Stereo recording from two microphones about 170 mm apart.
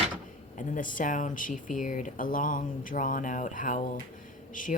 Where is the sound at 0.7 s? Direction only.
50° left (ahead or behind).